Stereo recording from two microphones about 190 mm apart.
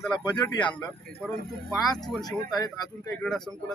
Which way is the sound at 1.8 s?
Centre (ahead or behind).